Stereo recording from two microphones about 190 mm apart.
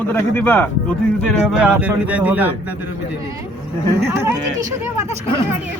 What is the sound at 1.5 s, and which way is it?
Speech, 5° right (ahead or behind).